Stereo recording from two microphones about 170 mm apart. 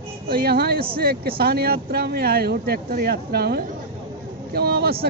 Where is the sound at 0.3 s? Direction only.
65° right (ahead or behind).